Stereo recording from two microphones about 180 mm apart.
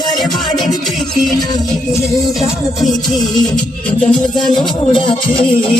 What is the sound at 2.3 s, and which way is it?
Music, centre (ahead or behind).